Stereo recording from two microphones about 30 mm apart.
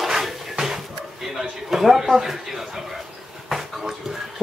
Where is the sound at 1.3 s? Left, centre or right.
Centre.